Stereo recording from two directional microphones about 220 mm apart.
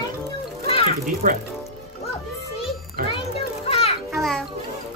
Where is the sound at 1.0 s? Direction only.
40° right (ahead or behind).